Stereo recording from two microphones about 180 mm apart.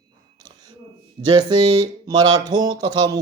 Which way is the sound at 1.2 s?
25° right (ahead or behind).